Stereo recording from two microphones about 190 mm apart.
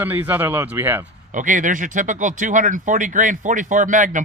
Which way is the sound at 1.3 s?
45° right (ahead or behind).